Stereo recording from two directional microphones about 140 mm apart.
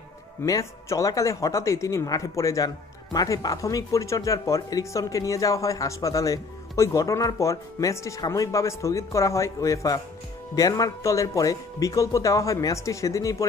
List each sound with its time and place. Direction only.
0.4 s speech: 20° left (ahead or behind)